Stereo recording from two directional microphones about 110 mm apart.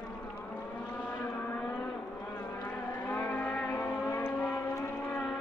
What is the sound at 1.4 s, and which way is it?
Vehicle, 15° left (ahead or behind).